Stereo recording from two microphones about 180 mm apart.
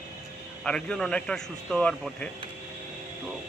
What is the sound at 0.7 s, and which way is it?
Speech, 5° left (ahead or behind).